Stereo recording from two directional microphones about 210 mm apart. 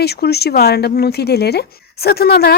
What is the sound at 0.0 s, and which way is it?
Speech, 50° left (ahead or behind).